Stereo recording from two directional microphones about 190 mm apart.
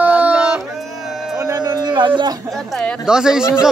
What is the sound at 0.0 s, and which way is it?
Yodeling, 5° right (ahead or behind).